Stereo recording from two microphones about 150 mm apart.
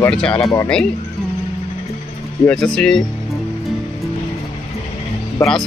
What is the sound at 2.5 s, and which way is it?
Speech, centre (ahead or behind).